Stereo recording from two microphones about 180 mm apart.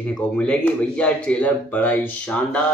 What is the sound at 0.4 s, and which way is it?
Speech, 5° left (ahead or behind).